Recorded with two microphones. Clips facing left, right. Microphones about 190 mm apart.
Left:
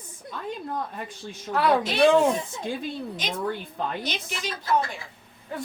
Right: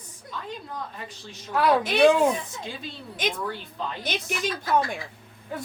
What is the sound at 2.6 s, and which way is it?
Speech, 50° left (ahead or behind).